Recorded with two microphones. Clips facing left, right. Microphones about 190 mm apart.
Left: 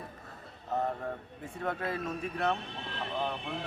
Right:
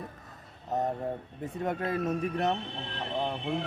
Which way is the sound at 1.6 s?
20° right (ahead or behind).